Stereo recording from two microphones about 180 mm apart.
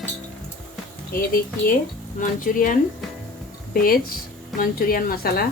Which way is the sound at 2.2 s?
50° left (ahead or behind).